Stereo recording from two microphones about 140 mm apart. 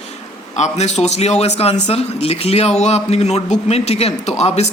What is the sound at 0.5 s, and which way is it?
Speech, 55° left (ahead or behind).